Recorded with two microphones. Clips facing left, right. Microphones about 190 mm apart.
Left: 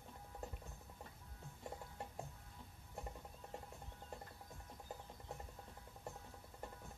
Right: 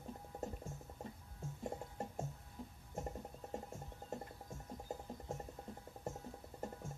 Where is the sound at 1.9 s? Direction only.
45° right (ahead or behind).